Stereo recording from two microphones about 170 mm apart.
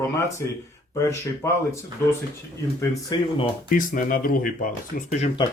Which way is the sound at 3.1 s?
25° left (ahead or behind).